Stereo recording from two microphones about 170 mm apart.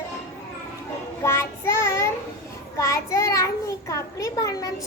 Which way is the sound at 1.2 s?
15° left (ahead or behind).